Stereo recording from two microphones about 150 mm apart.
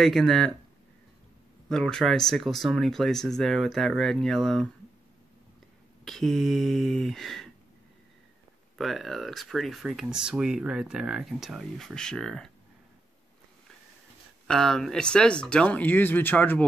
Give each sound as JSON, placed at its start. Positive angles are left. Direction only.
{"t": 0.0, "sound": "speech", "side_deg": 0}
{"t": 1.7, "sound": "speech", "side_deg": 5}
{"t": 6.0, "sound": "speech", "side_deg": 0}
{"t": 8.7, "sound": "speech", "side_deg": 0}
{"t": 14.5, "sound": "speech", "side_deg": 5}